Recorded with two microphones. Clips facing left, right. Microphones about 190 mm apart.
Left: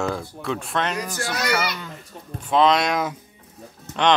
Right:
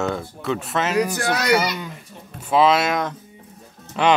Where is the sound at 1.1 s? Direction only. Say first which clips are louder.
Right 6 dB; 60° right (ahead or behind).